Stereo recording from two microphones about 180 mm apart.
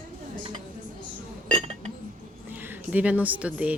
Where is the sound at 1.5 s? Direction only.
35° right (ahead or behind).